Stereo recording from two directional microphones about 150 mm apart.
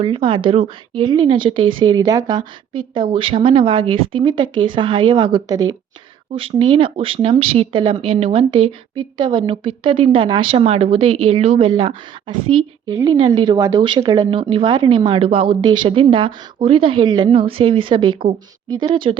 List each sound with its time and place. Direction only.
0.0 s speech: 35° right (ahead or behind)
12.9 s speech: 25° right (ahead or behind)